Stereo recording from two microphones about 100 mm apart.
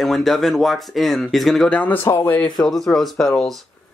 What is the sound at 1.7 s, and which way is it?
Speech, 15° left (ahead or behind).